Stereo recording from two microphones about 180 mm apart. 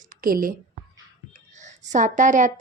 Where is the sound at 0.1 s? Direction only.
50° right (ahead or behind).